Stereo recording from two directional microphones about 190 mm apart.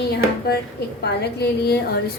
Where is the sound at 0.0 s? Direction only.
55° left (ahead or behind).